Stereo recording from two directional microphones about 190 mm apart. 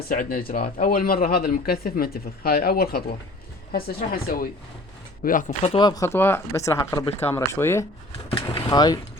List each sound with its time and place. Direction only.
0.1 s speech: 50° left (ahead or behind); by 7.9 s 15° left (ahead or behind)
8.3 s speech: 30° left (ahead or behind)